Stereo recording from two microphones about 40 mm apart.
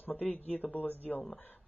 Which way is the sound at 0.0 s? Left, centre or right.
Left.